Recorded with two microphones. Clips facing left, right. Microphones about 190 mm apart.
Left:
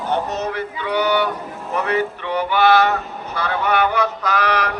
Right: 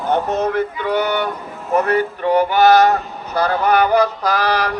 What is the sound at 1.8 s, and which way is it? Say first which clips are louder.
Speech: right 4 dB; 45° right (ahead or behind).